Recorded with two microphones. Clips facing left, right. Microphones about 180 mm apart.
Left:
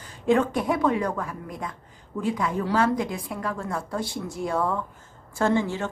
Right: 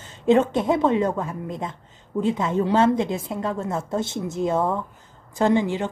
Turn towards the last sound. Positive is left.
turn(degrees=-15)  # may be behind; listen again after turning